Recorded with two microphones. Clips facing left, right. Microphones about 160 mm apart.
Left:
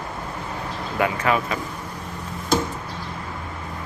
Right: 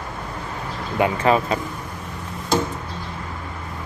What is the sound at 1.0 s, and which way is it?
Speech, 30° right (ahead or behind).